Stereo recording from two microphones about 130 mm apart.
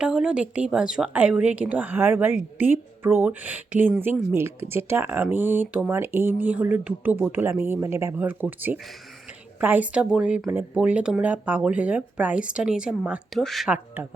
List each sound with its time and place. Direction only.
0.0 s a woman's voice: 5° right (ahead or behind)
13.7 s a woman's voice: 15° right (ahead or behind)